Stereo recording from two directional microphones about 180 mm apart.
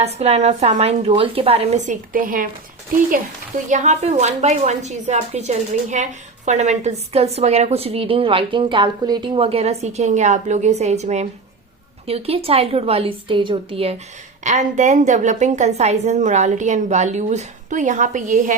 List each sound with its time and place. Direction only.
0.0 s a woman's voice: 35° right (ahead or behind)
3.7 s a woman's voice: 40° right (ahead or behind)
14.4 s a woman's voice: 40° right (ahead or behind)